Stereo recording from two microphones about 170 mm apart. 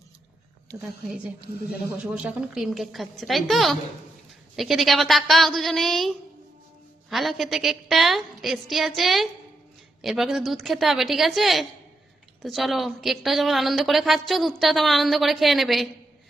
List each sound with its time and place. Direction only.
2.0 s a woman's voice: 5° right (ahead or behind)